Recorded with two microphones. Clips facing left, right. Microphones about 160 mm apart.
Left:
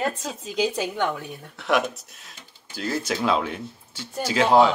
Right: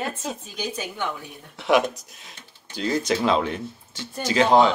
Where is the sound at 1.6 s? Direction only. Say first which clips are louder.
Right 3 dB; centre (ahead or behind).